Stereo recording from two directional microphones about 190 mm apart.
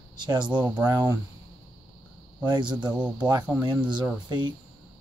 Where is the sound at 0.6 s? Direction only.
10° right (ahead or behind).